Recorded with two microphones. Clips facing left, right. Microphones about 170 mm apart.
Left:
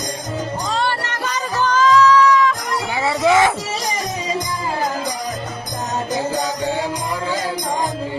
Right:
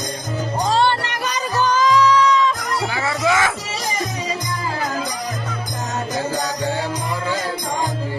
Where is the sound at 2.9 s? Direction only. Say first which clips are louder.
Left 6 dB; 20° left (ahead or behind).